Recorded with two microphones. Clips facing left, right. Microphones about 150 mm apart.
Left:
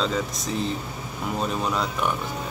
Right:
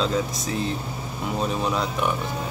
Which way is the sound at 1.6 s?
Centre (ahead or behind).